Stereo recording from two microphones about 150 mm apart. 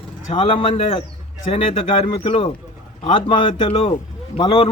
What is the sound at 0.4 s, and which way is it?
Speech, 40° left (ahead or behind).